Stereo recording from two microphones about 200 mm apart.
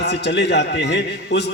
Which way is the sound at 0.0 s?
60° left (ahead or behind).